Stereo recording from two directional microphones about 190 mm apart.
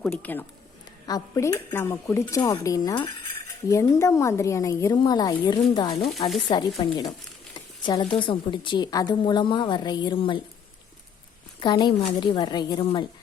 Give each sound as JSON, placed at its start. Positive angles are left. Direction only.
{"t": 0.0, "sound": "speech", "side_deg": 5}
{"t": 11.6, "sound": "speech", "side_deg": 25}